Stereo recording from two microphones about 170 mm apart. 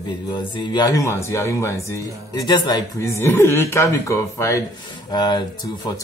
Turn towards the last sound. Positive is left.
turn(degrees=25)  # may be behind; listen again after turning